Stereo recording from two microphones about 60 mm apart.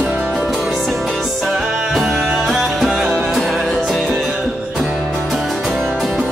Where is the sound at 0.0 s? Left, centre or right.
Right.